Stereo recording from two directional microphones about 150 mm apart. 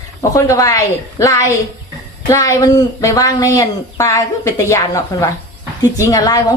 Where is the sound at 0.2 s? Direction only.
20° left (ahead or behind).